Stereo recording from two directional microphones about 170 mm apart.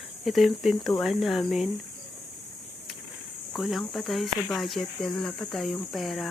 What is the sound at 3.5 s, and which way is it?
Speech, centre (ahead or behind).